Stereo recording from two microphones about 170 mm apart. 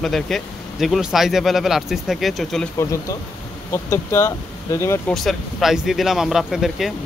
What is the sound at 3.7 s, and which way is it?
Speech, 15° left (ahead or behind).